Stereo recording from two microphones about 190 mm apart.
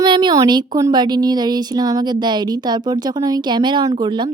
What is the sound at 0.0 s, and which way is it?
Speech, 20° right (ahead or behind).